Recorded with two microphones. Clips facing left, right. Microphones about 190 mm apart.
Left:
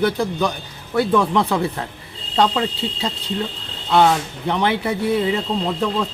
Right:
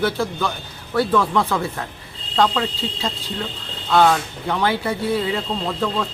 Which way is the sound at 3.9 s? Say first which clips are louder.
Left 1 dB; 20° left (ahead or behind).